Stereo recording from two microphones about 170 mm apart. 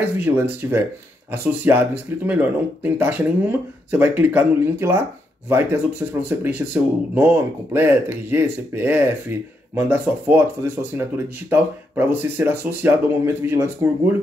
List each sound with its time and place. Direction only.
0.2 s speech: 10° right (ahead or behind)